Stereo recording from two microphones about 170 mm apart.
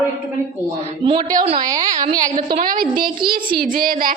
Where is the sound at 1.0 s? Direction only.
25° right (ahead or behind).